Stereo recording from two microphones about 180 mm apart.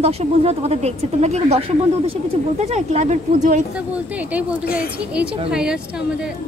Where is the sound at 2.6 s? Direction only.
40° right (ahead or behind).